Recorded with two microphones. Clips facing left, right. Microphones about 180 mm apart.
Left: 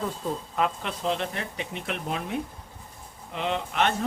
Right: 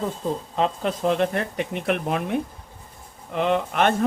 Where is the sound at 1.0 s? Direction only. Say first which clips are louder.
Right 7 dB; 55° right (ahead or behind).